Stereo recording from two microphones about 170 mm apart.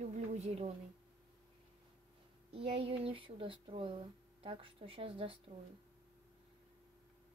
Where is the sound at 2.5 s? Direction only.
35° right (ahead or behind).